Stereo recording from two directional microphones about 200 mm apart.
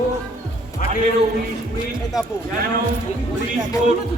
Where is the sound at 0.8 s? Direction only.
40° left (ahead or behind).